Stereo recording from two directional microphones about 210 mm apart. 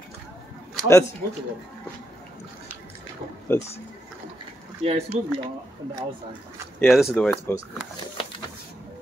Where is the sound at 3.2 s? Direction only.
40° right (ahead or behind).